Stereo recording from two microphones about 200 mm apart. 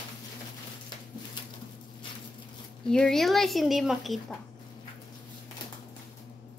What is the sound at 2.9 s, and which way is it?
A woman's voice, 5° left (ahead or behind).